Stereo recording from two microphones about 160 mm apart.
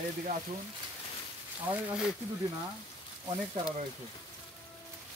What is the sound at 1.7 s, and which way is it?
Speech, 5° right (ahead or behind).